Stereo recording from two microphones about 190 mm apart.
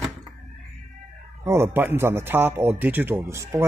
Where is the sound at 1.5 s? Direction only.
15° right (ahead or behind).